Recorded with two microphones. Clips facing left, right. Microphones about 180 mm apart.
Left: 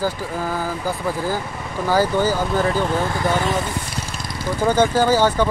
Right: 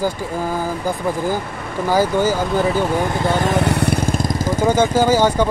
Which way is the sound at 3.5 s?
70° right (ahead or behind).